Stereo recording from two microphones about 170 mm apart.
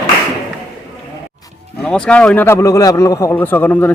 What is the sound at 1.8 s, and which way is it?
A man's voice, 5° left (ahead or behind).